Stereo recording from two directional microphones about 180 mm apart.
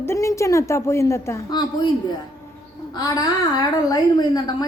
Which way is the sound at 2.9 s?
20° left (ahead or behind).